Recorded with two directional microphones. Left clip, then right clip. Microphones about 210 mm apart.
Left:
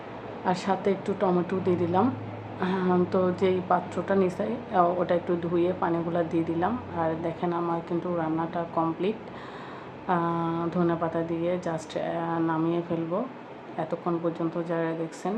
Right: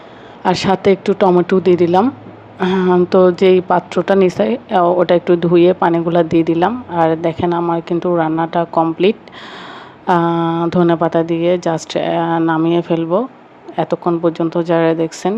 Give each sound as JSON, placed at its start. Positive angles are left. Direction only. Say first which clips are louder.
{"t": 0.4, "sound": "a woman's voice", "louder": "right 13 dB", "side_deg": -40}